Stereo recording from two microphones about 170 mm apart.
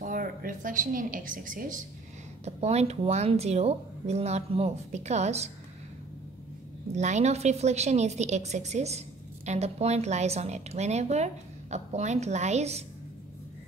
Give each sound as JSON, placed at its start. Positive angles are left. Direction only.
{"t": 0.0, "sound": "speech", "side_deg": -55}
{"t": 2.4, "sound": "speech", "side_deg": -40}
{"t": 7.0, "sound": "speech", "side_deg": -40}